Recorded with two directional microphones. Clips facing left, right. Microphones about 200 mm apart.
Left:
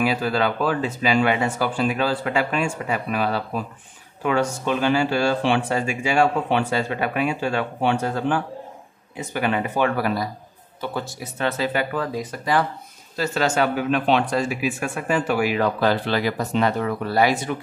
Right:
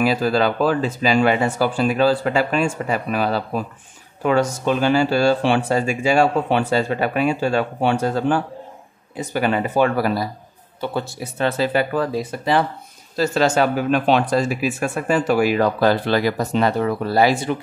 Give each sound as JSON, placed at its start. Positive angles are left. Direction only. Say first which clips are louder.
{"t": 0.0, "sound": "speech", "louder": "right 4 dB", "side_deg": -35}